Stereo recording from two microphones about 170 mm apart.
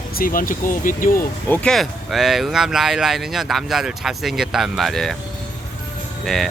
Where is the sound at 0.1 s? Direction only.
55° left (ahead or behind).